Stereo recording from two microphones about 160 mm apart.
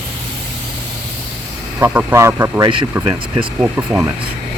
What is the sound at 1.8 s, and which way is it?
Speech, 10° right (ahead or behind).